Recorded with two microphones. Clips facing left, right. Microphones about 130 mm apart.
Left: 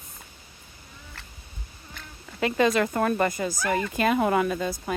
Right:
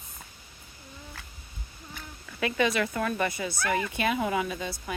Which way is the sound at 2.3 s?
35° left (ahead or behind).